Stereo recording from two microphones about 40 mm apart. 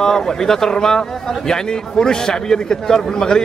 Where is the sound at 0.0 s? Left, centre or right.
Centre.